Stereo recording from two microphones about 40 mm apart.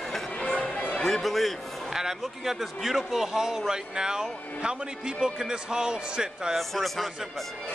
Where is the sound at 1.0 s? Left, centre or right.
Centre; by 6.5 s right.